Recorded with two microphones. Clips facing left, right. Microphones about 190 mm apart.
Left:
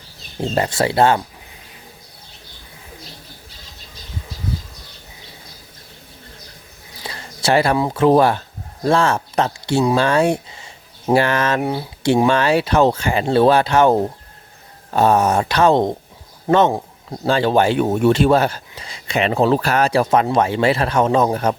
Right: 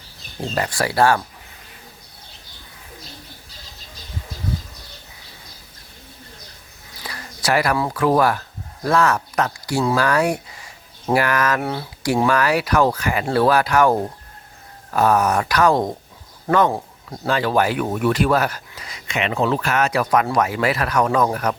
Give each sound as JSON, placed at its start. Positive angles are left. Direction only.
{"t": 0.4, "sound": "speech", "side_deg": 25}
{"t": 7.0, "sound": "speech", "side_deg": 25}